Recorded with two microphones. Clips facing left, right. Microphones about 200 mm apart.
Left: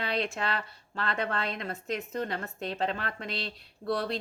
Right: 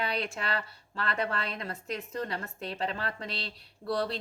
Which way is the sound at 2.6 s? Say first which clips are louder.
Left 2 dB; 30° right (ahead or behind).